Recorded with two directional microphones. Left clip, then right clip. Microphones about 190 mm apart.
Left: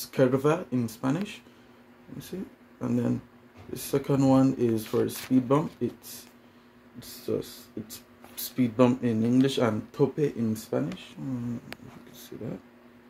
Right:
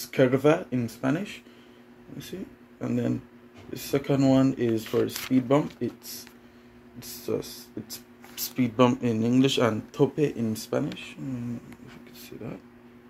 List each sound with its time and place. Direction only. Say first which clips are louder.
0.1 s speech: right 2 dB; 25° left (ahead or behind)
2.8 s speech: even; 30° left (ahead or behind)
7.3 s speech: right 1 dB; 25° left (ahead or behind)
8.5 s speech: right 1 dB; 20° left (ahead or behind)